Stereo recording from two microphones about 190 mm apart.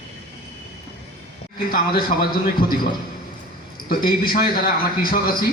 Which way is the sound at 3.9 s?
50° left (ahead or behind).